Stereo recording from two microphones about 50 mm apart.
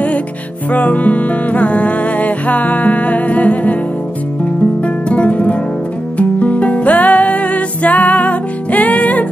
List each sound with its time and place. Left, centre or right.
0.7 s music: left
4.8 s music: left